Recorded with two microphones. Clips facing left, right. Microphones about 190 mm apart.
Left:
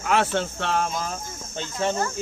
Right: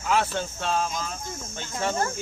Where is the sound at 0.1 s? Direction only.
65° left (ahead or behind).